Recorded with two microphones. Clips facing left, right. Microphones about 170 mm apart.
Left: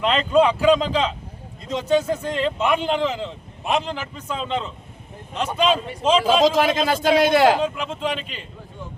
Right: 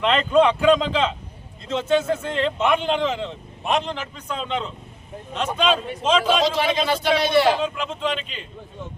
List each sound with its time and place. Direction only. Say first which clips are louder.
0.0 s speech: even; 10° left (ahead or behind)
6.6 s speech: left 2 dB; 45° left (ahead or behind)
7.8 s speech: even; 10° left (ahead or behind)